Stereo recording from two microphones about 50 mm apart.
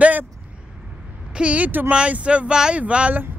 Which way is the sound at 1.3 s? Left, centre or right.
Right.